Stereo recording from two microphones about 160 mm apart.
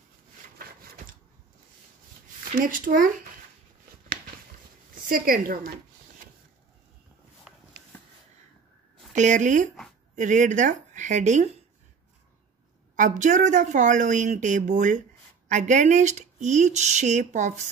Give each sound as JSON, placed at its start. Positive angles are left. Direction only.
{"t": 2.5, "sound": "speech", "side_deg": -60}
{"t": 4.9, "sound": "a sound", "side_deg": -60}
{"t": 9.1, "sound": "a woman's voice", "side_deg": -50}
{"t": 12.9, "sound": "speech", "side_deg": -50}